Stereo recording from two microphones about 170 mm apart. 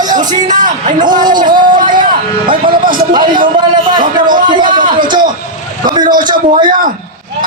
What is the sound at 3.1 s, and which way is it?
Speech, 30° right (ahead or behind).